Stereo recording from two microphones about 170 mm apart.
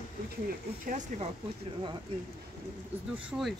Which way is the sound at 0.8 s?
45° right (ahead or behind).